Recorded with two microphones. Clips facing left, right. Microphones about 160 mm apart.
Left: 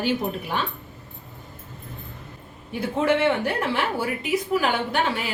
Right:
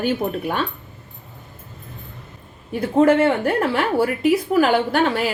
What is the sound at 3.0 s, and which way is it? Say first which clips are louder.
Speech: right 6 dB; 50° right (ahead or behind).